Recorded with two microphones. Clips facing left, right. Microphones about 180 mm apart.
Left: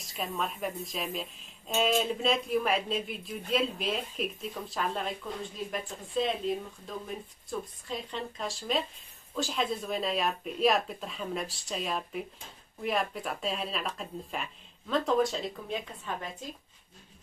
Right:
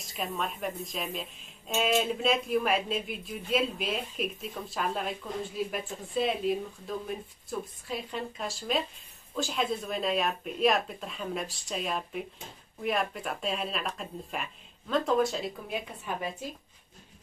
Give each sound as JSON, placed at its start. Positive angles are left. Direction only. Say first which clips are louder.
{"t": 0.0, "sound": "speech", "louder": "even", "side_deg": 0}